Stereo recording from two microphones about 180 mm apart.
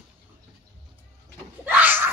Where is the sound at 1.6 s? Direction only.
10° right (ahead or behind).